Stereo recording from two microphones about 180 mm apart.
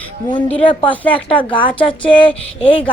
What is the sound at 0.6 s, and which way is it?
Speech, 30° left (ahead or behind).